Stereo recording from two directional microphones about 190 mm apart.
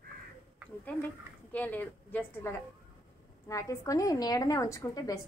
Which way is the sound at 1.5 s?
10° left (ahead or behind).